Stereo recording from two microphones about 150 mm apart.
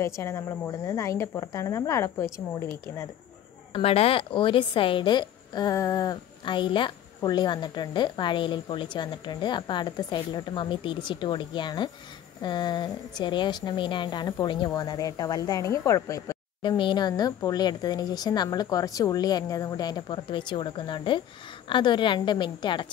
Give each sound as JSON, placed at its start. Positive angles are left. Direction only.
{"t": 0.0, "sound": "speech", "side_deg": 20}
{"t": 3.7, "sound": "a woman's voice", "side_deg": 40}